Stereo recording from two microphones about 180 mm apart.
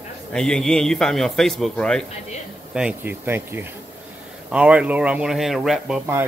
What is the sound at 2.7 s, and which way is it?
Speech, 5° right (ahead or behind).